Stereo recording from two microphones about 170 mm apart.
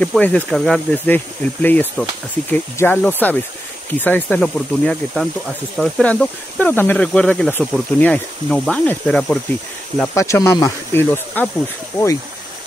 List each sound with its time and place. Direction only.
0.0 s speech: 5° left (ahead or behind)
10.1 s speech: 15° left (ahead or behind)